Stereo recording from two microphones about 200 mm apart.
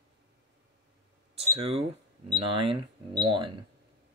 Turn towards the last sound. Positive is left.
turn(degrees=-25)  # may be behind; listen again after turning